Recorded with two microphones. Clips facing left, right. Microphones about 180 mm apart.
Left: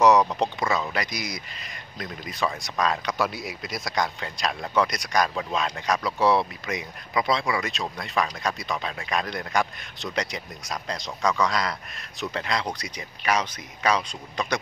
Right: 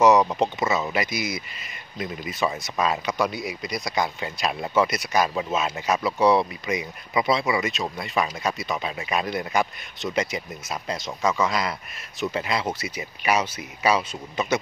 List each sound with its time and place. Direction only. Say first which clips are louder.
0.0 s speech: right 1 dB; centre (ahead or behind)